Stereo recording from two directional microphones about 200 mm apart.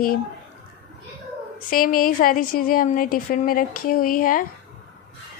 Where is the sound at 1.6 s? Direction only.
45° left (ahead or behind).